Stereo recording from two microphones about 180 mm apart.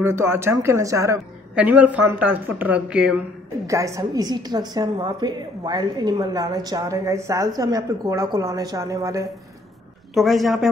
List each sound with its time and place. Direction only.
0.0 s a woman's voice: 15° right (ahead or behind)
3.6 s a woman's voice: 15° right (ahead or behind)
10.1 s a woman's voice: centre (ahead or behind)